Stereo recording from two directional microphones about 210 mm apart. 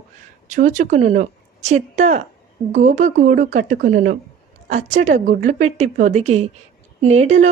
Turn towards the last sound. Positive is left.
turn(degrees=-35)  # may be behind; listen again after turning